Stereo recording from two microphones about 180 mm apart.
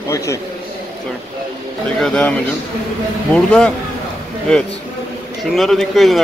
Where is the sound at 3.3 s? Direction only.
5° left (ahead or behind).